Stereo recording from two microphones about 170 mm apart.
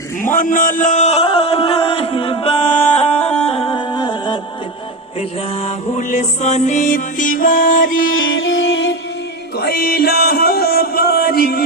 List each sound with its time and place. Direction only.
0.2 s a sound: 50° left (ahead or behind); by 4.4 s 25° left (ahead or behind)
5.6 s music: 45° left (ahead or behind)
8.3 s music: 90° left
9.6 s music: 65° left (ahead or behind)